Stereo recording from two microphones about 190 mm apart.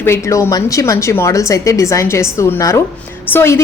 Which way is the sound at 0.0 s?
15° left (ahead or behind).